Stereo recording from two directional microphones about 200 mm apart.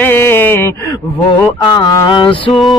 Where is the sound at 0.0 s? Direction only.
10° left (ahead or behind).